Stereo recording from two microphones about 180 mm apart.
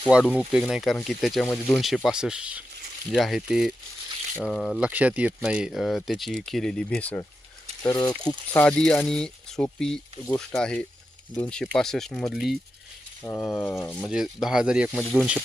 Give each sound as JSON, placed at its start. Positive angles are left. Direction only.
{"t": 0.0, "sound": "speech", "side_deg": -5}
{"t": 7.9, "sound": "speech", "side_deg": 25}
{"t": 8.5, "sound": "speech", "side_deg": 5}
{"t": 13.2, "sound": "speech", "side_deg": 10}
{"t": 14.1, "sound": "speech", "side_deg": -5}